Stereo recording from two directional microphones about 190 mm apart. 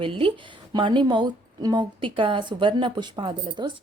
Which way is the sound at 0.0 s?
25° right (ahead or behind).